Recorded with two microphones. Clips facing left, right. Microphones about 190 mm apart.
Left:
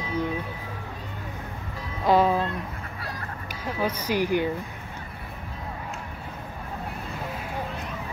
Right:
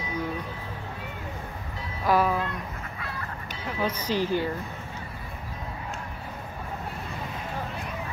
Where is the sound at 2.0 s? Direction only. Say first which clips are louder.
Left 3 dB; 25° left (ahead or behind).